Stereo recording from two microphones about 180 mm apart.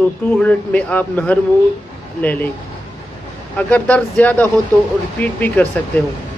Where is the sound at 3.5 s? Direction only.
10° left (ahead or behind).